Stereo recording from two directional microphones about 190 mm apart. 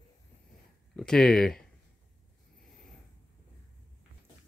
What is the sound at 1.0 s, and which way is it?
Speech, centre (ahead or behind).